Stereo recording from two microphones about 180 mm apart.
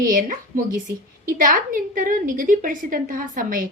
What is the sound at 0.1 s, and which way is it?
A woman's voice, 50° right (ahead or behind).